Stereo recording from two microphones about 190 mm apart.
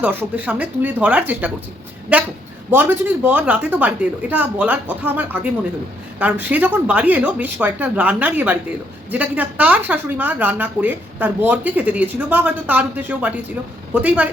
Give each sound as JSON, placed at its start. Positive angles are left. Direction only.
{"t": 0.0, "sound": "speech", "side_deg": -10}